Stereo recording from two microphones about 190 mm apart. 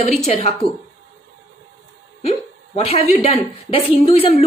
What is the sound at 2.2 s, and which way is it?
Speech, 30° left (ahead or behind).